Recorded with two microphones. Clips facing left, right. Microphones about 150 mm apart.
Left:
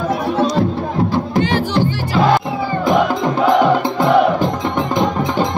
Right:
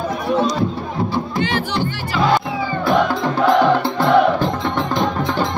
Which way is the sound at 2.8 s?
15° left (ahead or behind).